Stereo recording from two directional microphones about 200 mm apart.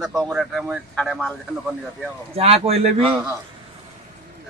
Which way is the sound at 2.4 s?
30° right (ahead or behind).